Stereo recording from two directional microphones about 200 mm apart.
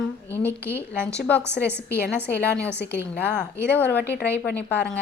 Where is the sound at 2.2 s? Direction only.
5° left (ahead or behind).